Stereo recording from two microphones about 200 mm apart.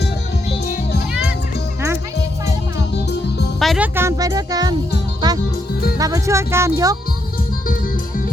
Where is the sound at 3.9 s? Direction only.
15° right (ahead or behind).